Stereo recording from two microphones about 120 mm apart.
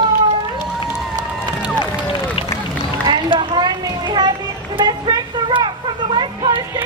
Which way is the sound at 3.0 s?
40° right (ahead or behind).